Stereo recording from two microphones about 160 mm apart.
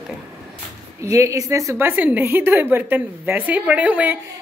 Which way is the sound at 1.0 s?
20° right (ahead or behind).